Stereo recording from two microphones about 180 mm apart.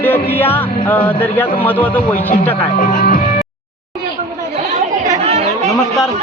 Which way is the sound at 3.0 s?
50° left (ahead or behind).